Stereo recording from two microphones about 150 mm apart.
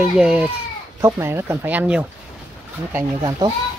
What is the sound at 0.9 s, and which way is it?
Speech, 20° right (ahead or behind).